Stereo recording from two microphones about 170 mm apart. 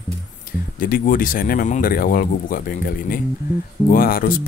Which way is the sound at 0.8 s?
55° left (ahead or behind).